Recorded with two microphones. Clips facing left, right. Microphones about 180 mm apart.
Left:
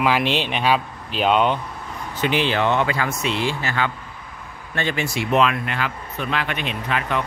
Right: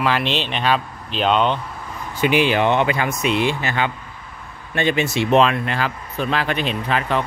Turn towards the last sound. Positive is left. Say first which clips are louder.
# right 3 dB
turn(degrees=-35)  # may be behind; listen again after turning